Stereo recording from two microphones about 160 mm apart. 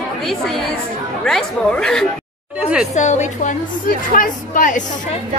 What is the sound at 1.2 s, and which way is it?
Speech, 5° left (ahead or behind).